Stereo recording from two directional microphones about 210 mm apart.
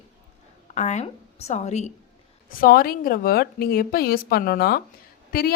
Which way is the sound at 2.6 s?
45° left (ahead or behind).